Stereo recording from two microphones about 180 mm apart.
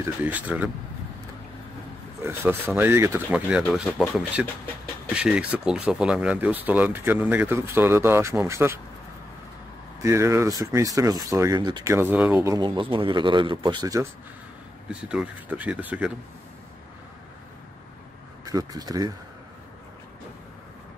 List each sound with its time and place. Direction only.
0.0 s speech: 10° right (ahead or behind)
2.2 s speech: 10° right (ahead or behind)
10.0 s speech: 15° right (ahead or behind)
12.5 s speech: 25° right (ahead or behind)
14.9 s speech: 5° right (ahead or behind)
18.4 s speech: 20° right (ahead or behind)